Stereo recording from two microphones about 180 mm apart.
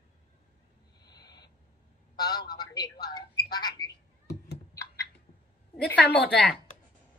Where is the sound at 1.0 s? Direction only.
20° left (ahead or behind).